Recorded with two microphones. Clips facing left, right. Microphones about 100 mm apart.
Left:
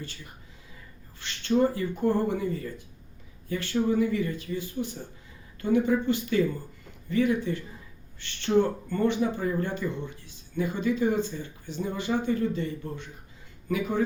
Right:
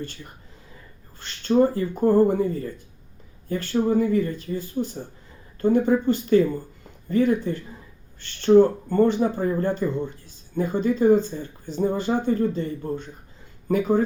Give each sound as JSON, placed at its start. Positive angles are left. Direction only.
{"t": 1.2, "sound": "speech", "side_deg": -45}